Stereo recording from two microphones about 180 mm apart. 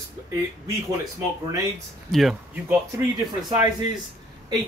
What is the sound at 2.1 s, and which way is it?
Speech, centre (ahead or behind).